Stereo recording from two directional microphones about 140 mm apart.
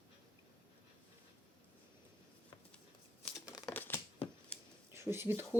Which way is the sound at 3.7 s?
15° left (ahead or behind).